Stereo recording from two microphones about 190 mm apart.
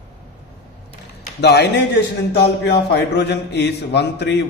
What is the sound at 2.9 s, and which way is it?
A man's voice, 65° left (ahead or behind).